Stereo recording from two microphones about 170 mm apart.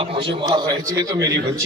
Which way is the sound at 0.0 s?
30° right (ahead or behind).